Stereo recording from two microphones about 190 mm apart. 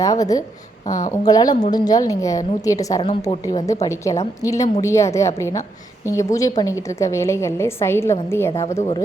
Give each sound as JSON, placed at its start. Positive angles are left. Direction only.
{"t": 0.0, "sound": "a woman's voice", "side_deg": 15}